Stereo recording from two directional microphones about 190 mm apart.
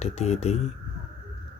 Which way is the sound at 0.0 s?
35° left (ahead or behind).